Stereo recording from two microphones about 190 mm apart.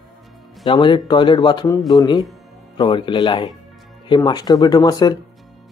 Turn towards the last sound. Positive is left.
turn(degrees=20)  # may be behind; listen again after turning